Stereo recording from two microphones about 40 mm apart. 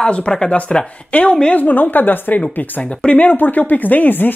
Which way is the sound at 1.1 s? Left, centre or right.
Left.